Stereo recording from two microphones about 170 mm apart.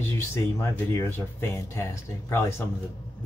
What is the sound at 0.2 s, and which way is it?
Speech, 15° left (ahead or behind).